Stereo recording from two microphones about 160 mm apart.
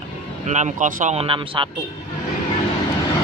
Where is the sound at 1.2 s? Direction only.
35° right (ahead or behind).